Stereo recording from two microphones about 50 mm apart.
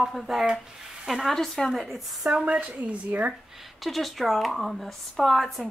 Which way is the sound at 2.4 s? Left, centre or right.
Right.